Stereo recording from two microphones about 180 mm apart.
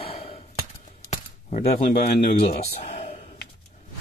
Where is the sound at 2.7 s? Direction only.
35° left (ahead or behind).